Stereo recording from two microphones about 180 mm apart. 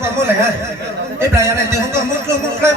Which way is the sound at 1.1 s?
15° right (ahead or behind).